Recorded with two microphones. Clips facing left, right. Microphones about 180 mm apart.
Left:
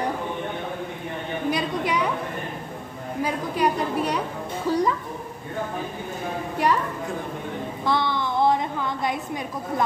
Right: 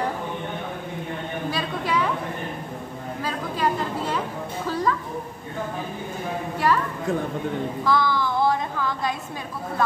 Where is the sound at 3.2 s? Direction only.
15° left (ahead or behind).